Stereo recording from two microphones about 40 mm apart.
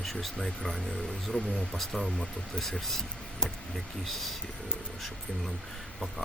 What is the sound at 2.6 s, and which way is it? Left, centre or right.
Speech, centre.